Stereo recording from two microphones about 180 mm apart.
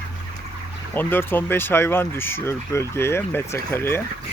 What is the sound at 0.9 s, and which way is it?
Speech, 10° left (ahead or behind).